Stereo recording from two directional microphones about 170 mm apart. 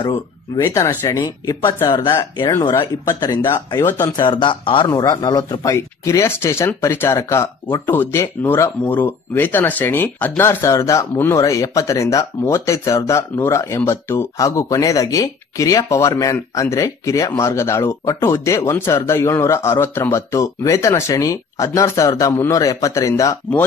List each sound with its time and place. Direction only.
0.6 s speech: 15° left (ahead or behind)